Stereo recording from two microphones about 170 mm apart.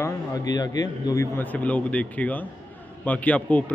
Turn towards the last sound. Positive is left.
turn(degrees=10)  # may be behind; listen again after turning